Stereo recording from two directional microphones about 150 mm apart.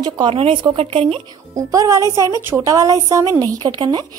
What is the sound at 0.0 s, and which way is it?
A woman's voice, 30° right (ahead or behind).